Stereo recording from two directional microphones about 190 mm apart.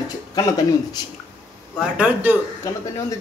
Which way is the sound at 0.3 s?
20° left (ahead or behind).